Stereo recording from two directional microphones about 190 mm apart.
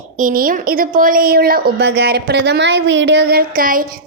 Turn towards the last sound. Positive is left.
turn(degrees=-50)  # may be behind; listen again after turning